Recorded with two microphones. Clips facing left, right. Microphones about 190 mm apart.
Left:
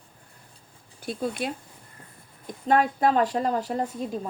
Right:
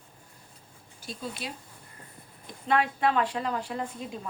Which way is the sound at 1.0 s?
55° left (ahead or behind).